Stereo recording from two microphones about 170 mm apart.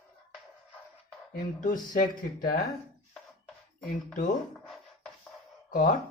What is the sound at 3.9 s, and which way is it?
Speech, 50° left (ahead or behind).